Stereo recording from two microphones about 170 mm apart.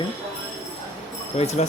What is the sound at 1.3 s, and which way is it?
Speech, 40° left (ahead or behind).